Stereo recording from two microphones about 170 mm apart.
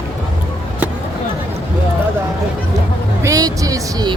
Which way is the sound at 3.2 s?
20° right (ahead or behind).